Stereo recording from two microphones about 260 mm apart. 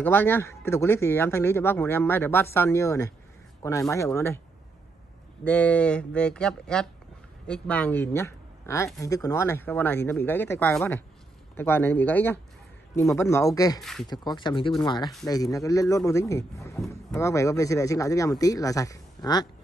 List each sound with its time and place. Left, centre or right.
0.0 s speech: centre
5.4 s speech: centre
13.7 s speech: centre
14.0 s speech: centre